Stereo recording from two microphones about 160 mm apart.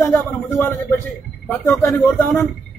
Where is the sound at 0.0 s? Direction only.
15° left (ahead or behind).